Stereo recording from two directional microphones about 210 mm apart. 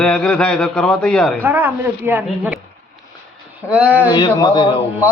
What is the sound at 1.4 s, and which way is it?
A man's voice, 10° right (ahead or behind).